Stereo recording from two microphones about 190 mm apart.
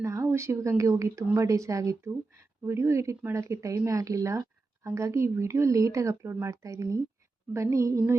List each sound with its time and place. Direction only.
0.0 s speech: 15° right (ahead or behind)